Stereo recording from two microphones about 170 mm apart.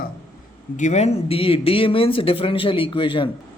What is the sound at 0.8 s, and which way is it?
Speech, 40° left (ahead or behind).